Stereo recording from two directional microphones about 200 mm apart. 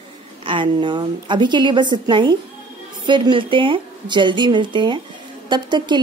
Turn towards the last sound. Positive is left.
turn(degrees=-20)  # may be behind; listen again after turning